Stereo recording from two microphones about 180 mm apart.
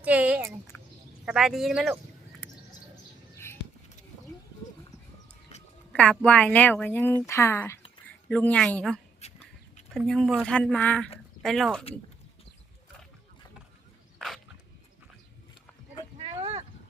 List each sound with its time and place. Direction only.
0.0 s speech: 10° right (ahead or behind)
5.9 s speech: 5° left (ahead or behind)
9.2 s duck: 35° left (ahead or behind)
10.0 s speech: centre (ahead or behind)
14.2 s dog: centre (ahead or behind)
16.1 s a sound: 30° right (ahead or behind)